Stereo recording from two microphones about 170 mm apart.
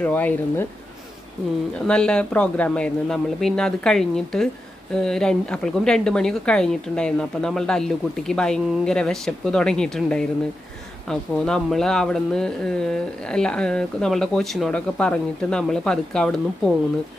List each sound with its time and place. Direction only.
0.0 s speech: 10° left (ahead or behind)
1.9 s speech: 5° left (ahead or behind)